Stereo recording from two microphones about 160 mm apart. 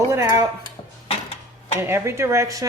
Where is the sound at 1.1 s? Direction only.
40° left (ahead or behind).